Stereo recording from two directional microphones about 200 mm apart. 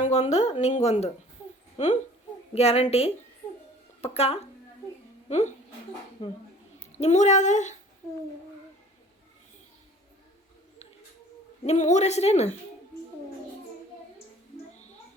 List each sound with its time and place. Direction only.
0.0 s speech: 35° left (ahead or behind)
6.2 s speech: 20° left (ahead or behind)
6.9 s speech: 35° left (ahead or behind)
11.6 s speech: 35° left (ahead or behind)